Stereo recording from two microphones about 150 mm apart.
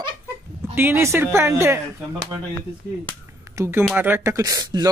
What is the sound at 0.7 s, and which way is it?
Speech, 15° right (ahead or behind).